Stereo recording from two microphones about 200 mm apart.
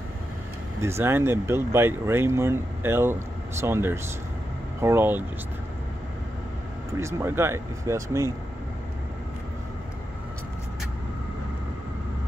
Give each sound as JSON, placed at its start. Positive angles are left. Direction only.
{"t": 0.7, "sound": "speech", "side_deg": -15}
{"t": 7.0, "sound": "speech", "side_deg": -15}